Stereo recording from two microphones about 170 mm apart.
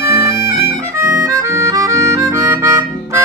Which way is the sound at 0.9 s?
15° right (ahead or behind).